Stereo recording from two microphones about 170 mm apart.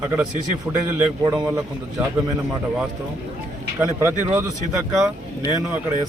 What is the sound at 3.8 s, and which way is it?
Speech, 10° right (ahead or behind).